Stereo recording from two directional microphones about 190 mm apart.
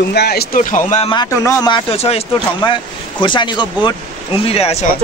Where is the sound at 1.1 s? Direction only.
25° left (ahead or behind).